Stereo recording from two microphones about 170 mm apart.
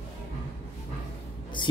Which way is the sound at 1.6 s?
30° left (ahead or behind).